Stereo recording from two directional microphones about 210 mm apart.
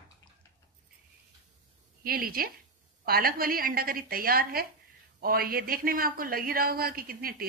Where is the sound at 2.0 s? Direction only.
45° right (ahead or behind).